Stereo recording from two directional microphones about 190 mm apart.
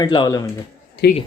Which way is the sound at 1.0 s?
65° left (ahead or behind).